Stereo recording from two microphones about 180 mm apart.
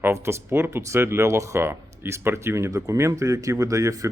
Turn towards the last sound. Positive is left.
turn(degrees=-20)  # may be behind; listen again after turning